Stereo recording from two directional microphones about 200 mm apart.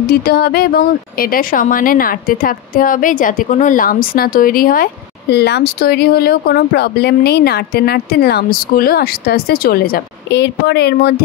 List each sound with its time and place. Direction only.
0.1 s speech: 50° left (ahead or behind)
5.3 s speech: 55° left (ahead or behind)